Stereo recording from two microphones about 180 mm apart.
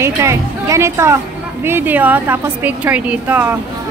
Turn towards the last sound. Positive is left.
turn(degrees=-10)  # may be behind; listen again after turning